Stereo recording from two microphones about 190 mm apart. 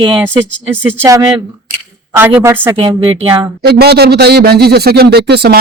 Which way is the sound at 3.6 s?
55° right (ahead or behind).